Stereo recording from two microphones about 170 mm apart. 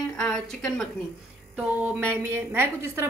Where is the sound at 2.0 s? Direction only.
10° right (ahead or behind).